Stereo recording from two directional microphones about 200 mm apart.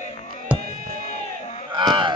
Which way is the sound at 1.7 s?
25° right (ahead or behind).